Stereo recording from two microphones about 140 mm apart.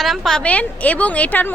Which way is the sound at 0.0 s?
Centre (ahead or behind).